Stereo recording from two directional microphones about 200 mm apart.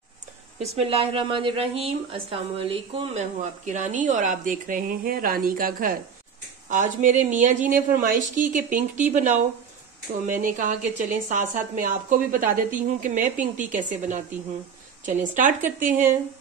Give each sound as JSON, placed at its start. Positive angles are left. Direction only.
{"t": 0.6, "sound": "speech", "side_deg": -30}
{"t": 10.3, "sound": "speech", "side_deg": -40}